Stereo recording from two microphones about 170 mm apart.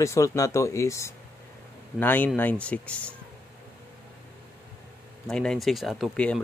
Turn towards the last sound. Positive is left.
turn(degrees=5)  # may be behind; listen again after turning